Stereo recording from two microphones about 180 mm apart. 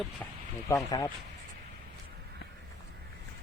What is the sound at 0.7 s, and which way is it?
Speech, 20° left (ahead or behind).